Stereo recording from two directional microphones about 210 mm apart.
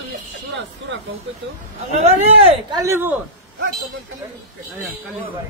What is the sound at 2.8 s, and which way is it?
Speech, 10° right (ahead or behind).